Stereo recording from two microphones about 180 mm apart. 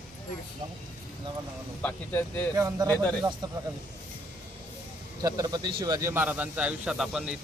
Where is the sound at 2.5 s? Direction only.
20° right (ahead or behind).